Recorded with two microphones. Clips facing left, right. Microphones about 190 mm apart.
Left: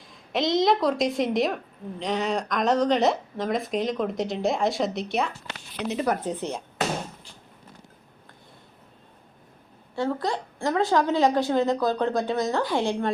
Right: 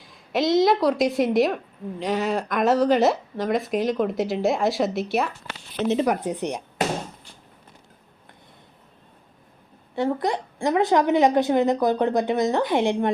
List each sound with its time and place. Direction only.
0.0 s a woman's voice: centre (ahead or behind)
5.7 s a woman's voice: 25° right (ahead or behind)
6.1 s speech: 15° right (ahead or behind)
9.9 s a woman's voice: 20° right (ahead or behind)